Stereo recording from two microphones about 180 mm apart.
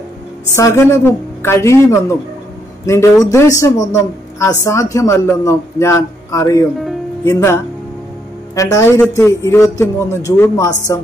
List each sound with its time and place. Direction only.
0.6 s a woman's voice: 15° left (ahead or behind)